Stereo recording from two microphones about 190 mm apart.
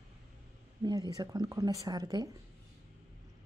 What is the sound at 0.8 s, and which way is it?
Speech, 20° right (ahead or behind).